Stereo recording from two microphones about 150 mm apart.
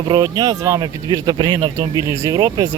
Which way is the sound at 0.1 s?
25° right (ahead or behind).